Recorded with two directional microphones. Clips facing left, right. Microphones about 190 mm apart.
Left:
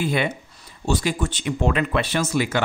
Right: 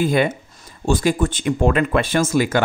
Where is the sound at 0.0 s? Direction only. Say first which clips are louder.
Right 5 dB; 45° right (ahead or behind).